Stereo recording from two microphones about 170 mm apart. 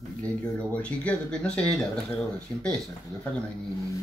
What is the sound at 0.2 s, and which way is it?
Speech, 10° left (ahead or behind).